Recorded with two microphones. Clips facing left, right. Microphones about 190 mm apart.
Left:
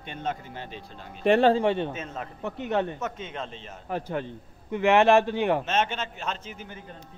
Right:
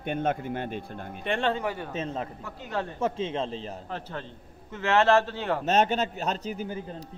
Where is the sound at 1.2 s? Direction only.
40° left (ahead or behind).